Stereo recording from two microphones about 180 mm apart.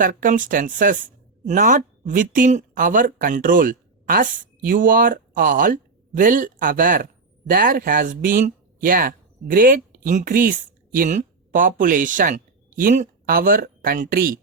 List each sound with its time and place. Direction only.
0.0 s speech: 50° right (ahead or behind)